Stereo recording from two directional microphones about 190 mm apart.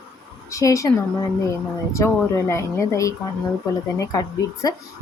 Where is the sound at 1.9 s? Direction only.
15° left (ahead or behind).